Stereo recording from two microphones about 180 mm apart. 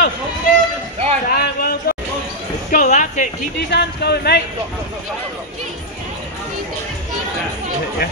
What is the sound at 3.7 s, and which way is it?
Speech, 65° left (ahead or behind).